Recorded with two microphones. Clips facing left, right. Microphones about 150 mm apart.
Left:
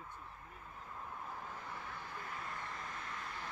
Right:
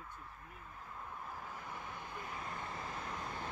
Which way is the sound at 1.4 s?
10° right (ahead or behind).